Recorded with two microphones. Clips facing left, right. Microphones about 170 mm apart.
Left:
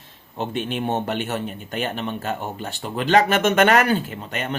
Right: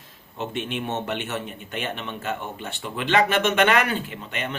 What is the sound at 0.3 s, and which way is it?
A man's voice, 35° left (ahead or behind).